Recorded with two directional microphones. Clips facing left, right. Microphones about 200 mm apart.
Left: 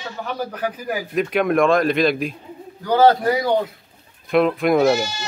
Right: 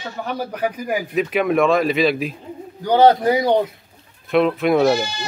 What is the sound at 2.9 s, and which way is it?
Speech, 20° right (ahead or behind).